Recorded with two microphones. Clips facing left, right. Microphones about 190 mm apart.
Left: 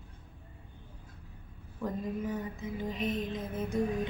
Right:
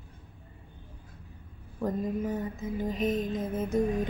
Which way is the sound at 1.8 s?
45° right (ahead or behind).